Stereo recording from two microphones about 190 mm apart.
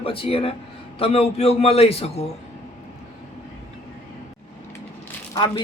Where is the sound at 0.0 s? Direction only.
30° left (ahead or behind).